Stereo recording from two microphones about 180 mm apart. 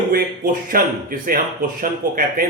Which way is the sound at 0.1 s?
55° right (ahead or behind).